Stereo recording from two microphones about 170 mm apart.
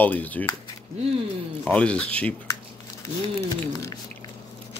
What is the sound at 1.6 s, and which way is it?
Speech, 5° left (ahead or behind).